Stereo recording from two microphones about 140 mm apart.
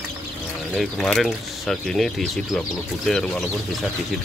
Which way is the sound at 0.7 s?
Centre (ahead or behind).